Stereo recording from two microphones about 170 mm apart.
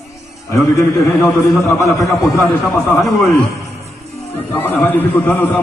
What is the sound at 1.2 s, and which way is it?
A man's voice, centre (ahead or behind).